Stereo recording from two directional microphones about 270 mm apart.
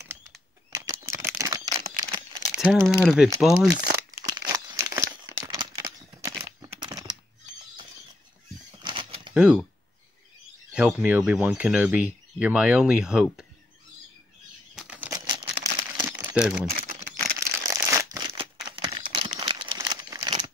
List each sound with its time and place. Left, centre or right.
0.0 s a sound: centre
2.5 s speech: centre
4.3 s crumpling: centre
8.8 s crumpling: centre
9.3 s speech: centre
10.7 s speech: centre
14.8 s crumpling: centre
16.7 s a sound: right
17.4 s crumpling: centre